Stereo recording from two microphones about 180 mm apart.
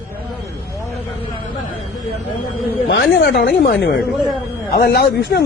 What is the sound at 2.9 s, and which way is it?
A man's voice, 65° left (ahead or behind).